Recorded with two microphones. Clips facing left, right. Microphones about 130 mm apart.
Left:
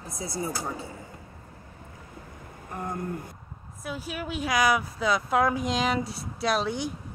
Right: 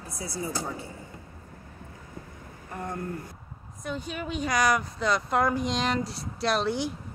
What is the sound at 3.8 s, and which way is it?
Speech, 5° left (ahead or behind).